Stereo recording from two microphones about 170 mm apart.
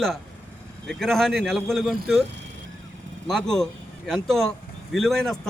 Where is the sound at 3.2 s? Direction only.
5° left (ahead or behind).